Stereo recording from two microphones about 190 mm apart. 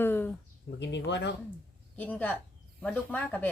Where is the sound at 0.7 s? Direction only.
65° left (ahead or behind).